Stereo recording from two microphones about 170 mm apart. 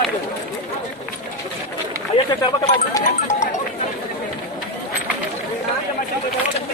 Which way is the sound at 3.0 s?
45° left (ahead or behind).